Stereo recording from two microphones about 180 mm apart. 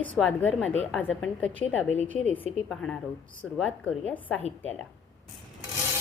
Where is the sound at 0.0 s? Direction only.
10° left (ahead or behind).